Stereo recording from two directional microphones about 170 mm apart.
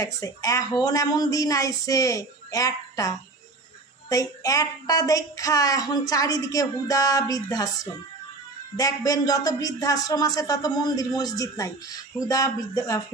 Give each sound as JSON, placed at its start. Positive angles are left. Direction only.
{"t": 0.0, "sound": "speech", "side_deg": 20}